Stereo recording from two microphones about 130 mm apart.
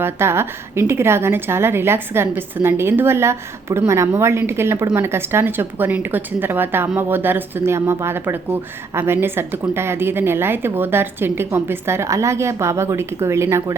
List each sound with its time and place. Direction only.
0.0 s a woman's voice: 20° right (ahead or behind)